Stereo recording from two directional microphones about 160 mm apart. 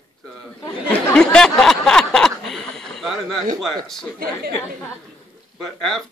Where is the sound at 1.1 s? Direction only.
5° left (ahead or behind).